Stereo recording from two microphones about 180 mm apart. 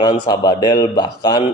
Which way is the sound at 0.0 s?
20° left (ahead or behind).